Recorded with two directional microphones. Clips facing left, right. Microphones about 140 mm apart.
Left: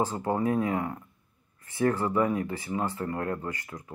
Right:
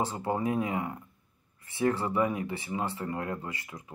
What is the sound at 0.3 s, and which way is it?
Speech, 20° right (ahead or behind).